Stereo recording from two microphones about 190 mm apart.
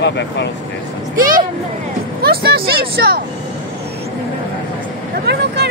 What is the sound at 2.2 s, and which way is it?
Speech, 55° right (ahead or behind).